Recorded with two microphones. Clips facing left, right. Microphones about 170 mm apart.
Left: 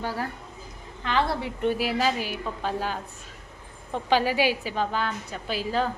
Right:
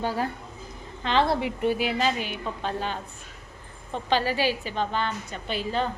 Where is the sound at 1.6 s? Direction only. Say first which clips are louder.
Left 2 dB; centre (ahead or behind).